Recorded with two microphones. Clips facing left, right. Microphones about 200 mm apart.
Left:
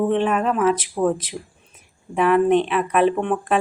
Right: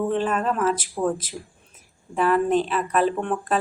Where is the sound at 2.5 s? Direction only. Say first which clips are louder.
Left 3 dB; 60° left (ahead or behind).